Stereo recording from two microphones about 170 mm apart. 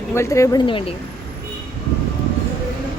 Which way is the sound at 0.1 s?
15° left (ahead or behind).